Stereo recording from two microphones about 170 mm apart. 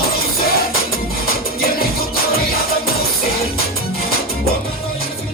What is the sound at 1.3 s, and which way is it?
Music, 65° left (ahead or behind).